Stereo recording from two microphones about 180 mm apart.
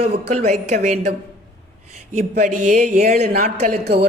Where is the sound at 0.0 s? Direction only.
35° right (ahead or behind).